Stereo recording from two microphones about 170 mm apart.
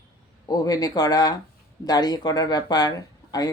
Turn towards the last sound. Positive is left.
turn(degrees=20)  # may be behind; listen again after turning